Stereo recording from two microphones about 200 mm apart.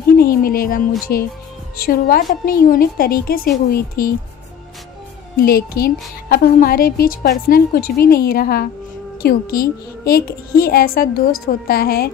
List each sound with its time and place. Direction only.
0.2 s a woman's voice: 45° left (ahead or behind)
5.4 s a woman's voice: 50° left (ahead or behind)